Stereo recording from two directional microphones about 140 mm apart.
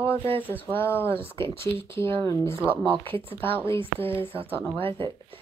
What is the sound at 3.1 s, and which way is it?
Speech, 40° right (ahead or behind).